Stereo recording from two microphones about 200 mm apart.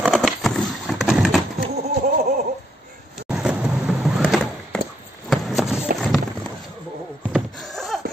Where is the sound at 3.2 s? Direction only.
5° right (ahead or behind).